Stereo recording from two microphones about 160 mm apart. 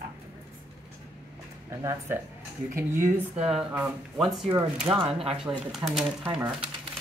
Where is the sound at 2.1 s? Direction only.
15° right (ahead or behind).